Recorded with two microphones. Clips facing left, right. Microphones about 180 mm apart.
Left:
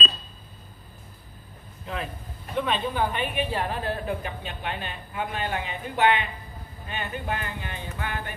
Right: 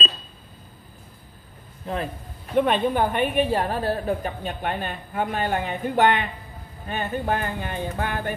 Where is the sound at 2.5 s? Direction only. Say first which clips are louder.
Right 6 dB; 55° right (ahead or behind).